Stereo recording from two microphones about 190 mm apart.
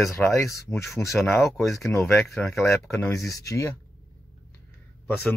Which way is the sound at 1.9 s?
10° left (ahead or behind).